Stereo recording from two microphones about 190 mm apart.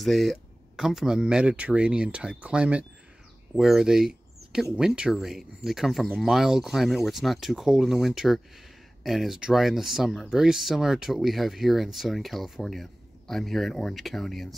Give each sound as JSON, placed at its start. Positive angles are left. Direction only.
{"t": 0.0, "sound": "speech", "side_deg": 0}